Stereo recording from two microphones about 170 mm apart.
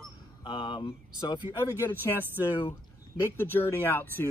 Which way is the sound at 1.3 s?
15° left (ahead or behind).